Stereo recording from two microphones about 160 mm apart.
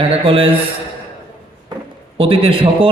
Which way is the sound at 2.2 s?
35° right (ahead or behind).